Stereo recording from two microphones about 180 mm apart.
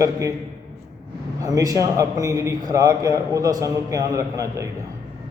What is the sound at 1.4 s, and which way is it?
A man's voice, 20° right (ahead or behind).